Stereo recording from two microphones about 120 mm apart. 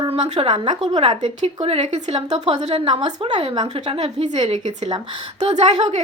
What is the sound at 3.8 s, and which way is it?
Speech, 60° right (ahead or behind).